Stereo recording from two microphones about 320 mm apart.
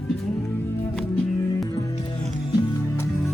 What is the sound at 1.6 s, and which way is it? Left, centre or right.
Music, centre.